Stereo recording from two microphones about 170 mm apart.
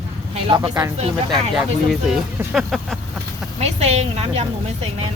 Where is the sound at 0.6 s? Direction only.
15° right (ahead or behind).